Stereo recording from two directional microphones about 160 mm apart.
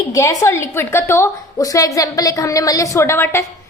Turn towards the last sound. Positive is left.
turn(degrees=15)  # may be behind; listen again after turning